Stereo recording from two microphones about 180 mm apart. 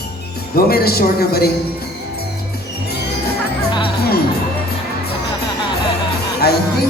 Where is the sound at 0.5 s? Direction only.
60° left (ahead or behind).